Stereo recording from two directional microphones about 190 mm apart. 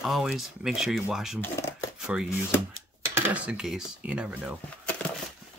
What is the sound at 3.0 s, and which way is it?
Dishes, 10° right (ahead or behind).